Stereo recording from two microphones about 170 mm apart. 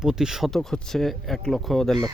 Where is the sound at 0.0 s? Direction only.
5° right (ahead or behind).